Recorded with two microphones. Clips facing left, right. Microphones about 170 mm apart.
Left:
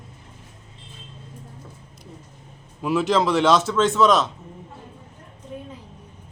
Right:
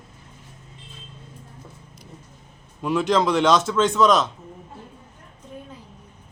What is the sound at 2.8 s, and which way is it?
Speech, 5° left (ahead or behind).